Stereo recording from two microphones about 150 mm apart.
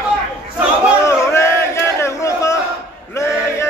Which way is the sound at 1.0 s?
20° left (ahead or behind).